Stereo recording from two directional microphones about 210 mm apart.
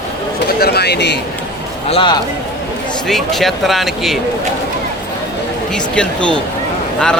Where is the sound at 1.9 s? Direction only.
25° left (ahead or behind).